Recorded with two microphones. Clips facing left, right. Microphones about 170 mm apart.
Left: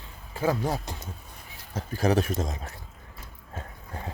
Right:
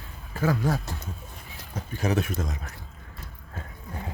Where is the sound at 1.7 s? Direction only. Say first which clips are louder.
Left 3 dB; 35° left (ahead or behind).